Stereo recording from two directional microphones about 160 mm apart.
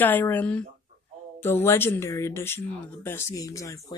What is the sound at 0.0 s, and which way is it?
Speech, 10° left (ahead or behind).